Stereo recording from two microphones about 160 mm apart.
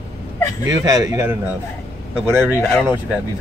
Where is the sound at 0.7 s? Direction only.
20° right (ahead or behind).